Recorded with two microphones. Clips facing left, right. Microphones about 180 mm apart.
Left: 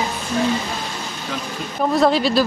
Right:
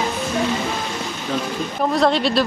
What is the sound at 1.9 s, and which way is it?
Speech, centre (ahead or behind).